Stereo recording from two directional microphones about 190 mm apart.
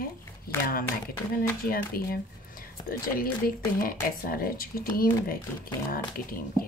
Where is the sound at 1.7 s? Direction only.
50° left (ahead or behind).